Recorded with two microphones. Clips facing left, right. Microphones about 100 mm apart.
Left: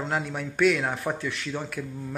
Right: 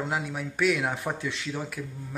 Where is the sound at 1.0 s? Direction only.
20° right (ahead or behind).